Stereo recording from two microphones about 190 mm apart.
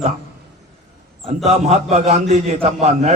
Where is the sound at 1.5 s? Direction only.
35° right (ahead or behind).